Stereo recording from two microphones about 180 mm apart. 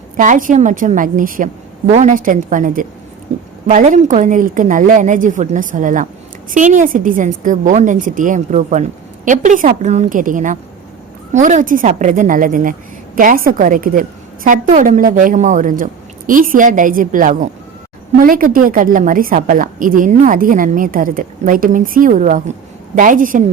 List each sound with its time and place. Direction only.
0.2 s a woman's voice: 50° right (ahead or behind)